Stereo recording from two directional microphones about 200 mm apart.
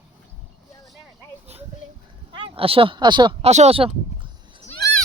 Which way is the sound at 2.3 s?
25° right (ahead or behind).